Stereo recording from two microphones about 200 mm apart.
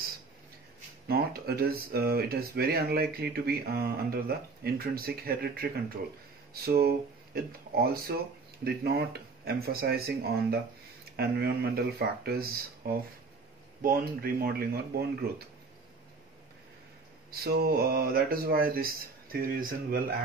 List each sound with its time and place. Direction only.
1.0 s speech: 50° right (ahead or behind)
17.3 s speech: 50° right (ahead or behind)